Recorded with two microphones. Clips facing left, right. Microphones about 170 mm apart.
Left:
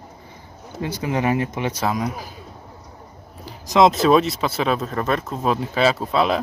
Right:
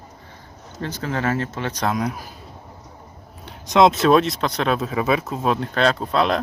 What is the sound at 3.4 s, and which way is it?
Speech, centre (ahead or behind).